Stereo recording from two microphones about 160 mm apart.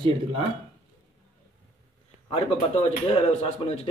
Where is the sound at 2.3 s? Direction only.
40° left (ahead or behind).